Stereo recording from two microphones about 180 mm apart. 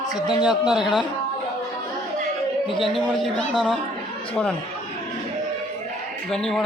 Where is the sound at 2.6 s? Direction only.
30° left (ahead or behind).